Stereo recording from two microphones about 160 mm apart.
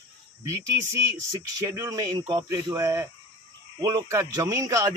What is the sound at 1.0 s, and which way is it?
Speech, 20° right (ahead or behind).